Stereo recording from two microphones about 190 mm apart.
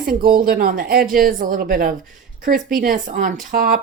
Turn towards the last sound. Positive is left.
turn(degrees=-45)  # may be behind; listen again after turning